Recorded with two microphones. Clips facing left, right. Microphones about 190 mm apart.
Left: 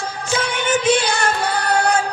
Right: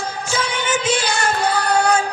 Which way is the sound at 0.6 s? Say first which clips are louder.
Left 5 dB; 60° left (ahead or behind).